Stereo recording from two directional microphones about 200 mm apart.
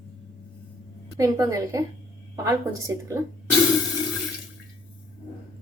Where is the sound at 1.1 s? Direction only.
15° right (ahead or behind).